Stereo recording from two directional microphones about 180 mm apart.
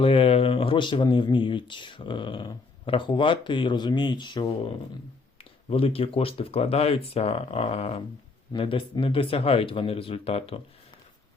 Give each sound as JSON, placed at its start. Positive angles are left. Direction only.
{"t": 0.0, "sound": "speech", "side_deg": 30}